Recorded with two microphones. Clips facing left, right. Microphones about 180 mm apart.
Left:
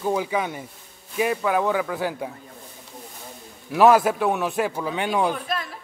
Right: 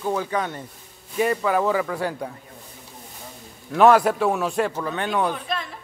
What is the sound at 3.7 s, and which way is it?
A man's voice, 5° left (ahead or behind).